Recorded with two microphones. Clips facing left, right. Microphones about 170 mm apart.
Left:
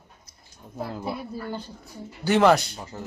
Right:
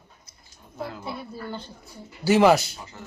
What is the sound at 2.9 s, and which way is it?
Speech, 35° left (ahead or behind).